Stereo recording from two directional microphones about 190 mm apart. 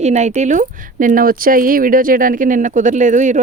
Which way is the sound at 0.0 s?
35° right (ahead or behind).